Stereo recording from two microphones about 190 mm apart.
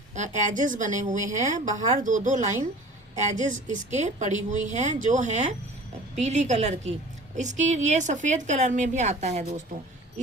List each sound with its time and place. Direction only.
0.1 s a woman's voice: 40° right (ahead or behind)